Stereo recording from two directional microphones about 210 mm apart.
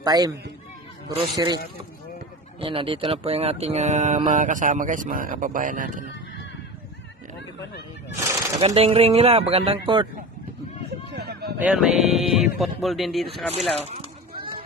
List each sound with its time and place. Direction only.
0.0 s a man's voice: 15° right (ahead or behind)
2.6 s speech: 25° right (ahead or behind)
8.6 s speech: 30° right (ahead or behind)
11.1 s a sound: 50° right (ahead or behind)
11.6 s speech: 5° right (ahead or behind)
13.8 s children playing: 30° right (ahead or behind)